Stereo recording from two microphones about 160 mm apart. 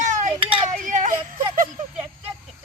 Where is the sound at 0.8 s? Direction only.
55° right (ahead or behind).